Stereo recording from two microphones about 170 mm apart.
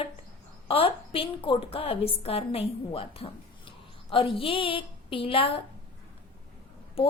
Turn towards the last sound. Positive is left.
turn(degrees=35)  # may be behind; listen again after turning